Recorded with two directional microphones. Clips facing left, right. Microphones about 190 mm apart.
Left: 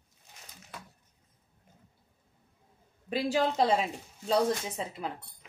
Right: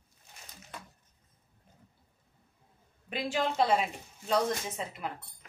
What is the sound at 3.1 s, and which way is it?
Speech, 35° left (ahead or behind).